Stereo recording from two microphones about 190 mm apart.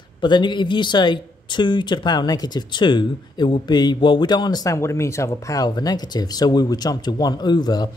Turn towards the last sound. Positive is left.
turn(degrees=20)  # may be behind; listen again after turning